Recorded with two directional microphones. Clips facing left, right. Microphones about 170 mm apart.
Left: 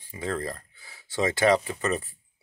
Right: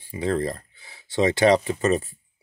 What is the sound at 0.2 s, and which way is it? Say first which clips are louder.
Speech: right 6 dB; 20° right (ahead or behind).